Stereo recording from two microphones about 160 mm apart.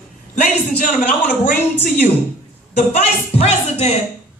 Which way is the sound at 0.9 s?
55° left (ahead or behind).